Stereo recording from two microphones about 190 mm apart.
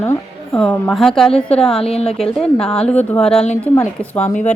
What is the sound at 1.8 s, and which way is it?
Speech, 35° left (ahead or behind).